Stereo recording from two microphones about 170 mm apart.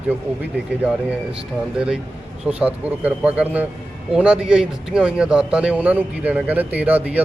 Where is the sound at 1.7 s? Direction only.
5° right (ahead or behind).